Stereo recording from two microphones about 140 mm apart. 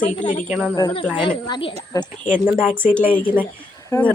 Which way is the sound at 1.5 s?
40° left (ahead or behind).